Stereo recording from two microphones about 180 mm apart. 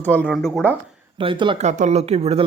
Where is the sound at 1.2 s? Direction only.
30° right (ahead or behind).